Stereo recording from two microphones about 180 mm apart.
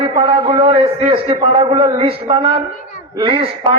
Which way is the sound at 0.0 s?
30° right (ahead or behind).